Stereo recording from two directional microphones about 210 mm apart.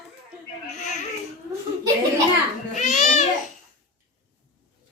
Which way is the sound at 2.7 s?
35° left (ahead or behind).